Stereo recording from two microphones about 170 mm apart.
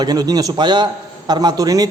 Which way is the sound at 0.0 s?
25° right (ahead or behind).